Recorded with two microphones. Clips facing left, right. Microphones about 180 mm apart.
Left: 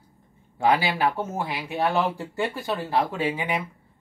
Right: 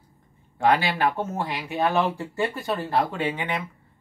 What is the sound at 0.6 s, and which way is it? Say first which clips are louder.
Speech: even; 5° left (ahead or behind).